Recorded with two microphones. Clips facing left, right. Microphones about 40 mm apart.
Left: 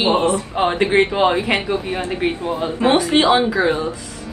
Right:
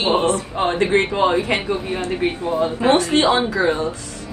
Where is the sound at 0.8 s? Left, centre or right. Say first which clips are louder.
Left 1 dB; left.